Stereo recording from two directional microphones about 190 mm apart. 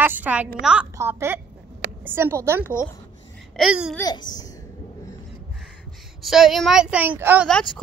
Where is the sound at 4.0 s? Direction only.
20° left (ahead or behind).